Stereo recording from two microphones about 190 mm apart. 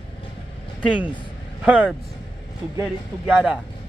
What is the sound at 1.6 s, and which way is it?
Speech, 10° right (ahead or behind).